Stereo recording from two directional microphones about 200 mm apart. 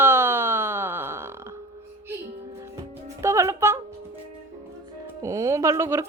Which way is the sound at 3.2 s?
15° right (ahead or behind).